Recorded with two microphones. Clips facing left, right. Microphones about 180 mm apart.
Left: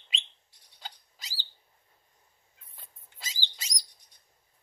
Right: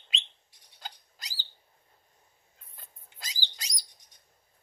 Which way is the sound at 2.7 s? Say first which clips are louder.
Right 1 dB; 5° left (ahead or behind).